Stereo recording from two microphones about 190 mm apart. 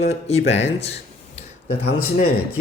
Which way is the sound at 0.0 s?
35° left (ahead or behind).